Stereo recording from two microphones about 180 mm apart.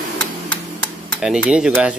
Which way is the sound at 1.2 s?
5° right (ahead or behind).